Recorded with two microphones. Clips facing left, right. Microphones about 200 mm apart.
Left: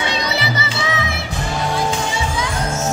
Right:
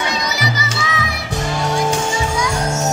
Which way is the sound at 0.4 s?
30° left (ahead or behind).